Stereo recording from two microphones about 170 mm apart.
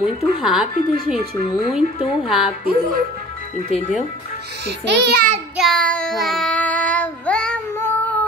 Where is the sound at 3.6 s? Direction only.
40° left (ahead or behind).